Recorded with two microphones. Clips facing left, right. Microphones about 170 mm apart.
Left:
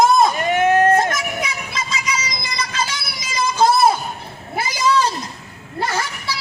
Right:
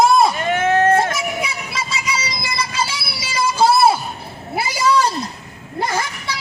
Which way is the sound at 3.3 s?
5° right (ahead or behind).